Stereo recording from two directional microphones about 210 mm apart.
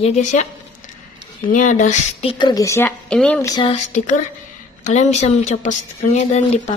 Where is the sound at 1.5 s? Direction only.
35° left (ahead or behind).